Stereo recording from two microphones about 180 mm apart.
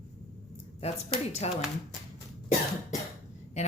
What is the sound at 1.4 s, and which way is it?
Speech, 35° left (ahead or behind).